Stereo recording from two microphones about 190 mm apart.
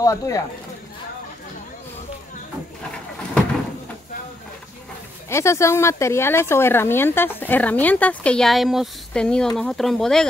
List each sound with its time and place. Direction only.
0.0 s speech: 15° left (ahead or behind)
5.3 s speech: 15° left (ahead or behind)